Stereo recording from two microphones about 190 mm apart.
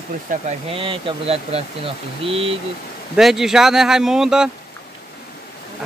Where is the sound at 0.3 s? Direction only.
35° right (ahead or behind).